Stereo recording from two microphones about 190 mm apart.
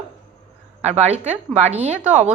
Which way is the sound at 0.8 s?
35° right (ahead or behind).